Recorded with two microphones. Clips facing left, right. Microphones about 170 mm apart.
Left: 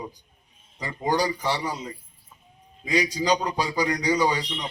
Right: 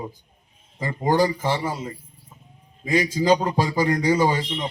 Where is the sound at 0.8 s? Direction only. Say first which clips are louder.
Right 5 dB; 50° right (ahead or behind).